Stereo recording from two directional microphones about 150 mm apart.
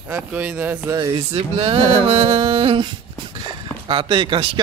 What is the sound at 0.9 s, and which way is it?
Speech, 30° right (ahead or behind).